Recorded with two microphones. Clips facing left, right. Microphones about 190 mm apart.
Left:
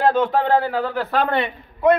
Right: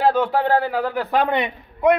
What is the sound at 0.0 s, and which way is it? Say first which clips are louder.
A man's voice: even; 5° right (ahead or behind).